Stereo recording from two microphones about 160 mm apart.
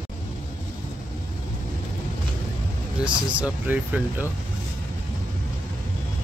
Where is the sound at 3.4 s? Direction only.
10° right (ahead or behind).